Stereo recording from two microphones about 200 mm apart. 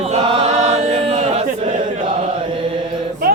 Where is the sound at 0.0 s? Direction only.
30° right (ahead or behind).